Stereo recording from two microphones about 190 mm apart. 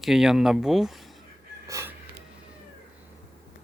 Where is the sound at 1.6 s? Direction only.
15° right (ahead or behind).